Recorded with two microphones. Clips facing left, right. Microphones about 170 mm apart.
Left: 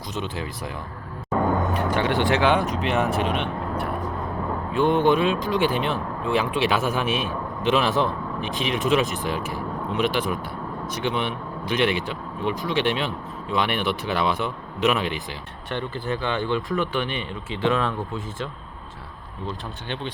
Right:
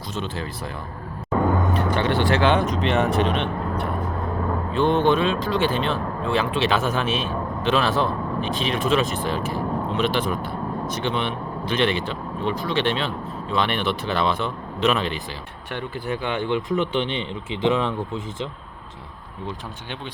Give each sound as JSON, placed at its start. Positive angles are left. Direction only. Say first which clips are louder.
{"t": 0.1, "sound": "speech", "louder": "right 1 dB", "side_deg": 15}
{"t": 1.3, "sound": "music", "louder": "right 1 dB", "side_deg": 10}
{"t": 2.8, "sound": "speech", "louder": "right 2 dB", "side_deg": 5}
{"t": 15.7, "sound": "speech", "louder": "even", "side_deg": -15}